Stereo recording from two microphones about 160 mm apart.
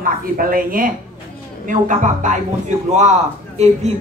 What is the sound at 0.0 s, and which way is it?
A woman's voice, 60° right (ahead or behind).